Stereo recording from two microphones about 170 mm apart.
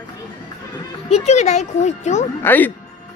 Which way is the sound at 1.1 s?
40° left (ahead or behind).